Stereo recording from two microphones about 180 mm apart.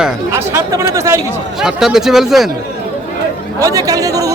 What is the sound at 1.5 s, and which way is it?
Speech, centre (ahead or behind).